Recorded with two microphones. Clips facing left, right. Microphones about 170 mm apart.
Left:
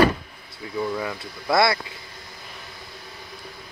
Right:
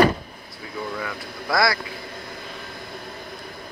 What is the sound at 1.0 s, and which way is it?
Speech, 20° left (ahead or behind).